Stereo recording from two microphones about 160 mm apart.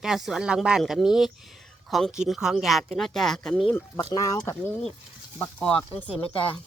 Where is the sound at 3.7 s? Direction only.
20° left (ahead or behind).